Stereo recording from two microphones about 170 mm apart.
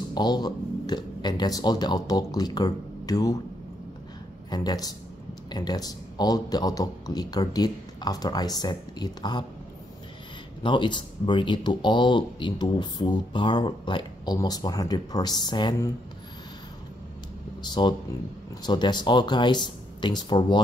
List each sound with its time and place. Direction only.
0.1 s speech: 25° left (ahead or behind)
4.5 s speech: 25° left (ahead or behind)
10.6 s speech: 30° left (ahead or behind)
17.6 s speech: 30° left (ahead or behind)